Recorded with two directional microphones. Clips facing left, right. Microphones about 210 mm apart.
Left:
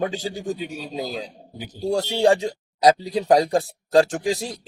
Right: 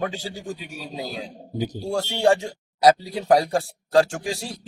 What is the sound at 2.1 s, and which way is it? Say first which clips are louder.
Speech: left 1 dB; 15° left (ahead or behind).